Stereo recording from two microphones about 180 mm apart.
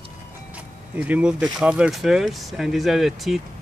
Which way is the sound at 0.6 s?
10° right (ahead or behind).